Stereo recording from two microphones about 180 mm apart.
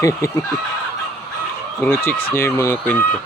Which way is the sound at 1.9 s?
15° left (ahead or behind).